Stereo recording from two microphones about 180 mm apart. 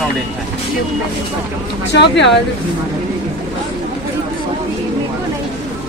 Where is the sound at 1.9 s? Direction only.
75° left (ahead or behind).